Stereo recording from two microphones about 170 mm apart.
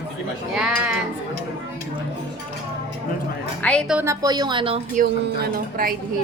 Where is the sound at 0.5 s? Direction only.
5° right (ahead or behind).